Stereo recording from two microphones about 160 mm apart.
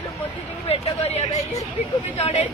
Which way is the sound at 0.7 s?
40° left (ahead or behind).